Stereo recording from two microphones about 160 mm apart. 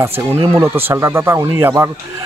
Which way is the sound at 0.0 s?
15° right (ahead or behind).